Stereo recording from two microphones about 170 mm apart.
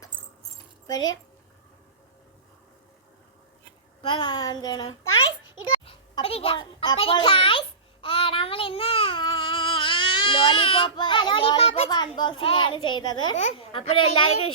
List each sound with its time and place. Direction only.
4.0 s a child's voice: 30° left (ahead or behind)
8.0 s child singing: 30° left (ahead or behind)
13.3 s a child's voice: 40° left (ahead or behind)